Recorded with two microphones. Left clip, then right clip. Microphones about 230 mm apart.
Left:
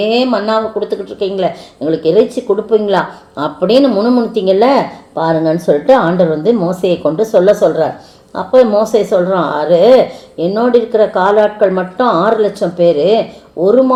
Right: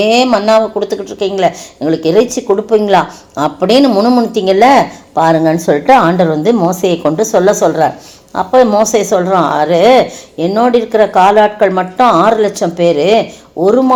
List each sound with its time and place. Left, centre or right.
0.0 s speech: right